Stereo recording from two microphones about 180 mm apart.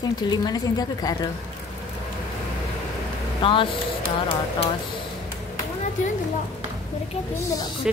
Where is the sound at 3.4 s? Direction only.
30° left (ahead or behind).